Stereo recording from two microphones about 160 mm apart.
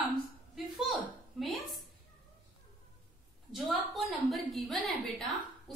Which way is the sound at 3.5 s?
Centre (ahead or behind).